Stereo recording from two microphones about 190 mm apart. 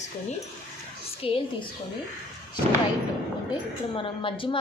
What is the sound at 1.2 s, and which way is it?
Speech, 30° left (ahead or behind).